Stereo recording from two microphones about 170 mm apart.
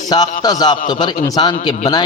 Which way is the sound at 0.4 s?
25° left (ahead or behind).